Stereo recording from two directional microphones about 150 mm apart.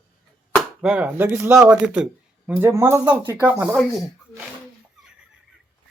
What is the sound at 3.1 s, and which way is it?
Speech, 10° right (ahead or behind).